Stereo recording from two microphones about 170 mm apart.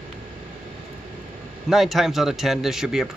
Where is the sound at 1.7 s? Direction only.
Centre (ahead or behind).